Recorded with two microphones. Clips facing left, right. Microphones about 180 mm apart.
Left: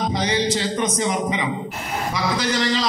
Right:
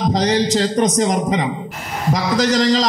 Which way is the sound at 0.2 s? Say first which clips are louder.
Right 5 dB; 40° right (ahead or behind).